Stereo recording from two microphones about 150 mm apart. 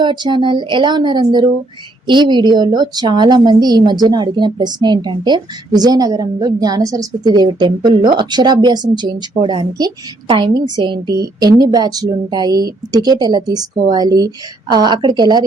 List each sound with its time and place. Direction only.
0.0 s a woman's voice: 30° right (ahead or behind)